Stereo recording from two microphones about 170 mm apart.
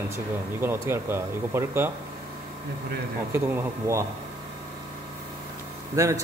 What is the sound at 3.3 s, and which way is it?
Speech, 15° right (ahead or behind).